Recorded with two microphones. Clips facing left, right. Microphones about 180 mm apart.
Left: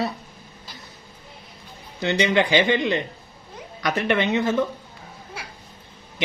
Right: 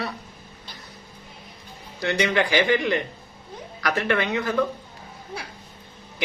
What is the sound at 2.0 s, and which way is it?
Speech, 20° left (ahead or behind).